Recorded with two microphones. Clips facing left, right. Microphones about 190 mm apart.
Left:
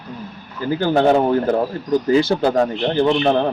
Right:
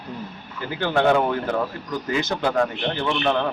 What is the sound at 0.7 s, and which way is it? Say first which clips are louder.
Speech: left 4 dB; 35° left (ahead or behind).